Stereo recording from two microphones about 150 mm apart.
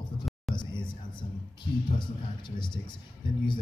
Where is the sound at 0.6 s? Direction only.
30° left (ahead or behind).